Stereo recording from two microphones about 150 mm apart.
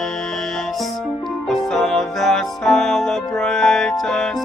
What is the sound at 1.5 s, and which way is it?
Music, centre (ahead or behind).